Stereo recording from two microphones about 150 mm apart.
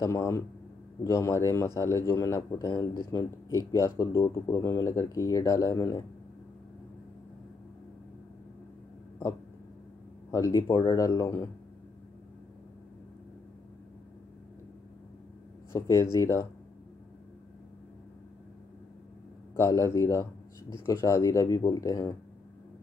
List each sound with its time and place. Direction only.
0.0 s a man's voice: 20° left (ahead or behind)
10.3 s a man's voice: 25° left (ahead or behind)
15.7 s a man's voice: 20° left (ahead or behind)
19.5 s a man's voice: 20° left (ahead or behind)